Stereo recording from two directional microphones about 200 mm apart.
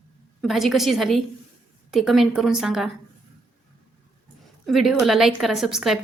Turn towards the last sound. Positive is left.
turn(degrees=0)  # may be behind; listen again after turning